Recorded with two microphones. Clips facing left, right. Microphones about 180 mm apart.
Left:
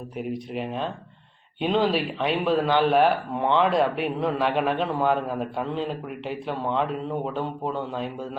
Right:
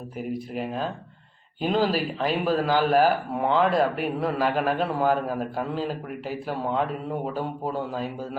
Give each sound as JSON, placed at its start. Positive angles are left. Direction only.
{"t": 0.2, "sound": "speech", "side_deg": 0}